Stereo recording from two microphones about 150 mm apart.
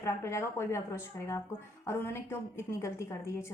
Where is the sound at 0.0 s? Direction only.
20° left (ahead or behind).